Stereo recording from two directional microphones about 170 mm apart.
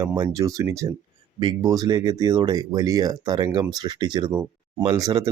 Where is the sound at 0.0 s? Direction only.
20° right (ahead or behind).